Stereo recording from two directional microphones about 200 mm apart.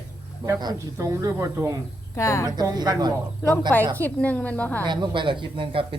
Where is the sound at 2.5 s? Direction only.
20° right (ahead or behind).